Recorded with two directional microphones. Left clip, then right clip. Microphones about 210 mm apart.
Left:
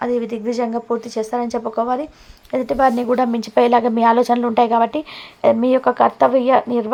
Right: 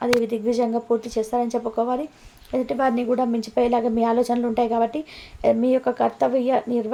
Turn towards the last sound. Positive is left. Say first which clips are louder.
# left 6 dB
turn(degrees=10)  # may be behind; listen again after turning